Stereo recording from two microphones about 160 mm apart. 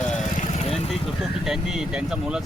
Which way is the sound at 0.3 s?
45° left (ahead or behind).